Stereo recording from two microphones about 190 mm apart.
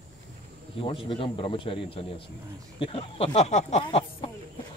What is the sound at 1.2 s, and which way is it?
Speech, 25° left (ahead or behind).